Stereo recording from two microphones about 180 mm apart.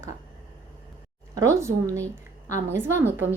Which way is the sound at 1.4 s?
15° right (ahead or behind).